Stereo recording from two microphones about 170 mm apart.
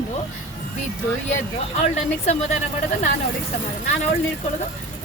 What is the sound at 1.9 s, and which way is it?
Speech, 40° left (ahead or behind).